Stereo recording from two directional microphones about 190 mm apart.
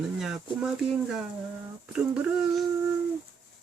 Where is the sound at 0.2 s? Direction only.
5° right (ahead or behind).